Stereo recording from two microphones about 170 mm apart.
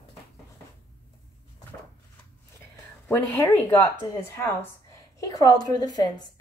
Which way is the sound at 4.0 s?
20° left (ahead or behind).